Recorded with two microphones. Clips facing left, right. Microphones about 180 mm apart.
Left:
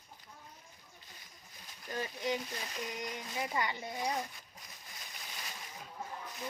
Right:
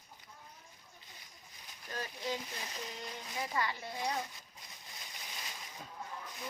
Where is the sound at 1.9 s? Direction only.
15° left (ahead or behind).